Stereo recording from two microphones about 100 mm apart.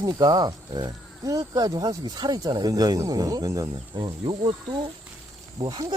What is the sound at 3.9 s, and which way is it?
Speech, 60° right (ahead or behind).